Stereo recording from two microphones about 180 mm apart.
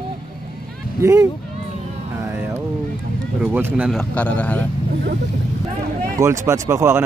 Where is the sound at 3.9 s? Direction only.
5° left (ahead or behind).